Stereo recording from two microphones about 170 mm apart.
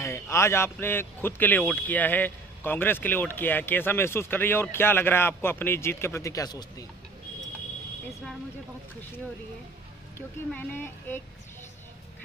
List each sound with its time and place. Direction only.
0.0 s speech: 15° left (ahead or behind)
10.1 s speech: 10° left (ahead or behind)